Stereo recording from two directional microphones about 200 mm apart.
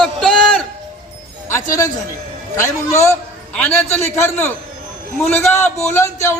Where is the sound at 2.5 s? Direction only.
15° left (ahead or behind).